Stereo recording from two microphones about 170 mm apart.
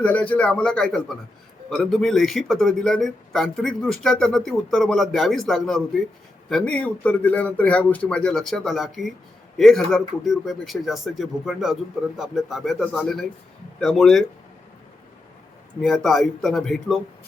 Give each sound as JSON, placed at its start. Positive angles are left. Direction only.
{"t": 0.0, "sound": "speech", "side_deg": 10}
{"t": 15.8, "sound": "speech", "side_deg": 0}